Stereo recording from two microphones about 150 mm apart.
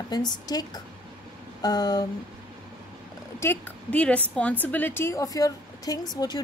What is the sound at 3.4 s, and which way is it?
Speech, 10° left (ahead or behind).